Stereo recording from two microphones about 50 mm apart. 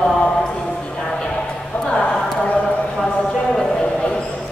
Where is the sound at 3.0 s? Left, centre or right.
Centre.